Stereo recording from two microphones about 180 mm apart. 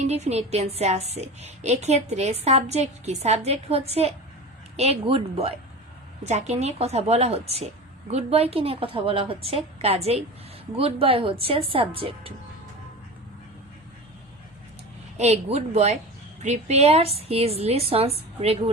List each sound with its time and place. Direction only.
0.1 s a woman's voice: 35° right (ahead or behind)
15.2 s a woman's voice: 35° right (ahead or behind)